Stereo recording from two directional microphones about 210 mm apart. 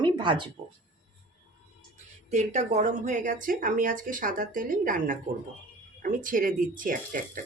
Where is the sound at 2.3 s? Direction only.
35° right (ahead or behind).